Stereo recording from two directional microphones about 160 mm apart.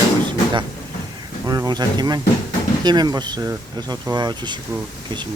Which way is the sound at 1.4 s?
25° right (ahead or behind).